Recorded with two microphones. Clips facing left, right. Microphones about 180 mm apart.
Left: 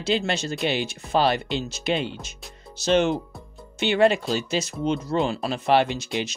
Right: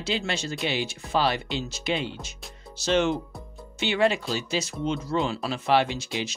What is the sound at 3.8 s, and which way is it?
Speech, 55° left (ahead or behind).